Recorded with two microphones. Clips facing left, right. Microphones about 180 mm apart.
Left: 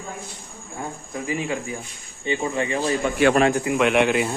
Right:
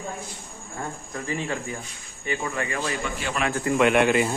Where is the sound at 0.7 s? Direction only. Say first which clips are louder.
Left 2 dB; 10° left (ahead or behind).